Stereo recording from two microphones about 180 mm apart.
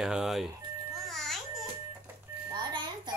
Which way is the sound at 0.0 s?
5° right (ahead or behind).